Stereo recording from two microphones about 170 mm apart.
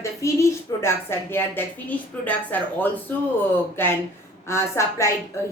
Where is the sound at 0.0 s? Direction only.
15° left (ahead or behind).